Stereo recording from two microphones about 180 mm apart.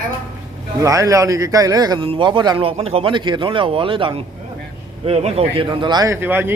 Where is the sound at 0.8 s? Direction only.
20° right (ahead or behind).